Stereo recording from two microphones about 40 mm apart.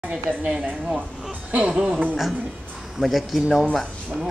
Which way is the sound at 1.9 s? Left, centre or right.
Right.